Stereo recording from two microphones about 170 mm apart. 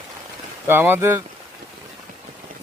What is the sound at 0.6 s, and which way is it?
Speech, 15° right (ahead or behind).